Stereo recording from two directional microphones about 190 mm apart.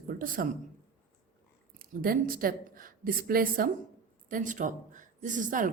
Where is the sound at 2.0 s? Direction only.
50° right (ahead or behind).